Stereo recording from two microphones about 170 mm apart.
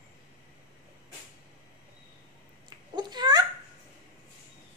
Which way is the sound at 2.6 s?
25° right (ahead or behind).